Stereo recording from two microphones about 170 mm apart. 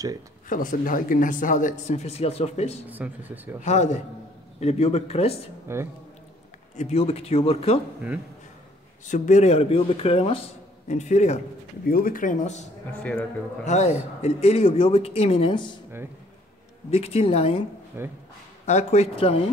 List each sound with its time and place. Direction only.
0.5 s speech: 55° left (ahead or behind)
2.9 s speech: 10° right (ahead or behind)
3.6 s speech: 45° left (ahead or behind)
5.7 s speech: 15° right (ahead or behind)
6.8 s speech: 35° left (ahead or behind)
9.0 s speech: 45° left (ahead or behind)
11.9 s speech: 55° left (ahead or behind)
13.0 s a man's voice: 5° left (ahead or behind)
13.7 s speech: 40° left (ahead or behind)
16.9 s speech: 35° left (ahead or behind)
17.9 s speech: 10° right (ahead or behind)
18.7 s speech: 40° left (ahead or behind)